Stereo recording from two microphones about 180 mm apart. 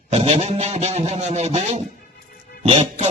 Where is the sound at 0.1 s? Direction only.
35° right (ahead or behind).